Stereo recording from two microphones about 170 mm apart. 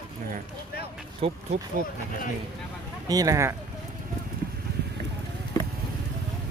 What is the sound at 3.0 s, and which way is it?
Speech, 20° right (ahead or behind).